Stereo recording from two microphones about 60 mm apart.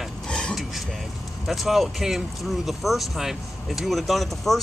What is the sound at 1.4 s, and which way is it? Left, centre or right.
Speech, centre.